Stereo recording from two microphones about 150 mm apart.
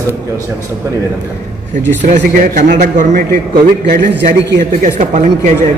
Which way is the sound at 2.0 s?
55° right (ahead or behind).